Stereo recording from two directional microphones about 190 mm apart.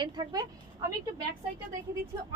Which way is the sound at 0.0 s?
20° right (ahead or behind).